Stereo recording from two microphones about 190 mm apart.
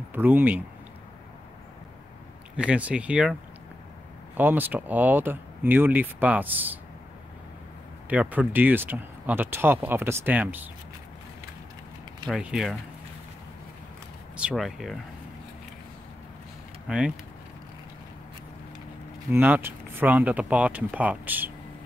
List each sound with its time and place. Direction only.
0.1 s speech: 10° right (ahead or behind)
2.5 s speech: 5° right (ahead or behind)
4.4 s speech: 10° right (ahead or behind)
8.1 s speech: 10° right (ahead or behind)
12.3 s speech: 5° right (ahead or behind)
14.3 s speech: 5° right (ahead or behind)
16.8 s speech: 5° right (ahead or behind)
19.3 s speech: 10° right (ahead or behind)